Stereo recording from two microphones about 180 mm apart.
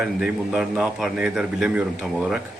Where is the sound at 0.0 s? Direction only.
5° right (ahead or behind).